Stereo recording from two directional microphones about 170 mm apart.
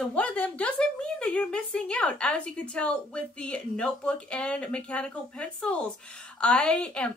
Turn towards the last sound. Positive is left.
turn(degrees=5)  # may be behind; listen again after turning